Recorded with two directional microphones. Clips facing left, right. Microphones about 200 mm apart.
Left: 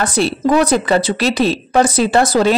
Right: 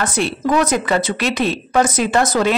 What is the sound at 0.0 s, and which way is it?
A woman's voice, 35° left (ahead or behind).